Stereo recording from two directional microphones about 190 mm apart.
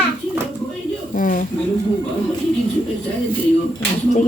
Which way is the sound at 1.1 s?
45° left (ahead or behind).